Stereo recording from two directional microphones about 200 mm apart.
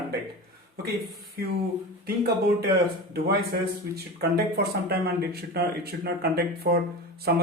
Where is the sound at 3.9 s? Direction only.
55° right (ahead or behind).